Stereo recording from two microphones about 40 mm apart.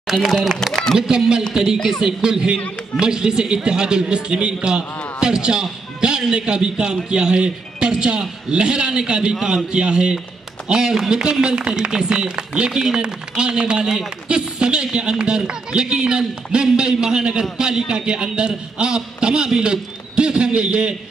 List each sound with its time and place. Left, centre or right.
0.0 s speech: centre
0.9 s speech: centre
1.8 s speech: centre
2.0 s speech: centre